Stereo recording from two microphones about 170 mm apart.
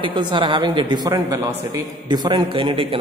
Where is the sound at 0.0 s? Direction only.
30° right (ahead or behind).